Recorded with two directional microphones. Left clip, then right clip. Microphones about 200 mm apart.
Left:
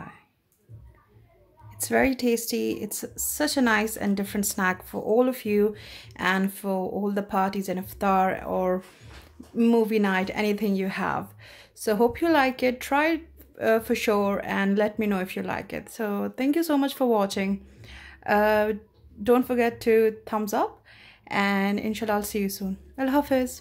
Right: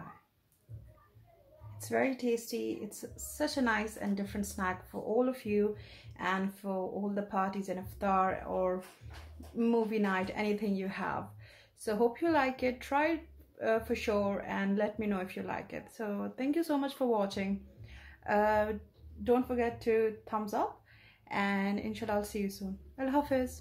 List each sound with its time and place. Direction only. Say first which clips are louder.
1.8 s a woman's voice: left 9 dB; 45° left (ahead or behind)